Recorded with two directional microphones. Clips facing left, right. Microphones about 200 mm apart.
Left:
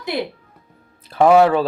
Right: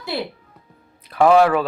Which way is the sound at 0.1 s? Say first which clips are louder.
Left 2 dB; 20° left (ahead or behind).